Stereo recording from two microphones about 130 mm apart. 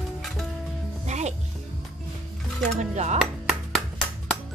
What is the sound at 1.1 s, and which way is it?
Music, 60° right (ahead or behind).